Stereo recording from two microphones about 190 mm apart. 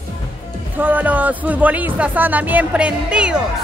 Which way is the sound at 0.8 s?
10° right (ahead or behind).